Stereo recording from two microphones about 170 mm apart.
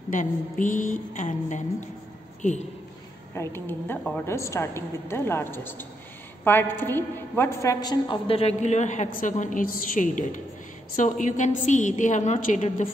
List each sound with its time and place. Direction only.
0.1 s a woman's voice: 50° left (ahead or behind)
3.3 s a woman's voice: 15° left (ahead or behind); by 12.8 s 45° left (ahead or behind)